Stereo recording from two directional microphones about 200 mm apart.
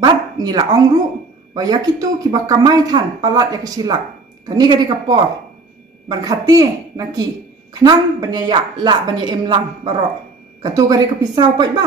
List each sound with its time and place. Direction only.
0.0 s bow-wow: 20° right (ahead or behind)
1.5 s a woman's voice: 20° right (ahead or behind)